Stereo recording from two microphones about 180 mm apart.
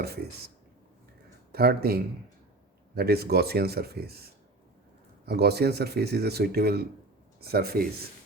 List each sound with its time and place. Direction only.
0.0 s speech: 60° right (ahead or behind)
1.5 s speech: 60° right (ahead or behind)